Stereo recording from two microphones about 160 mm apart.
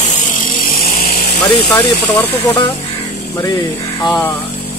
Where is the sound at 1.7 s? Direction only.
15° left (ahead or behind).